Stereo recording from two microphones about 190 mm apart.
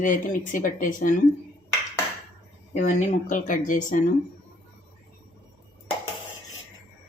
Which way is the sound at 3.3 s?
45° left (ahead or behind).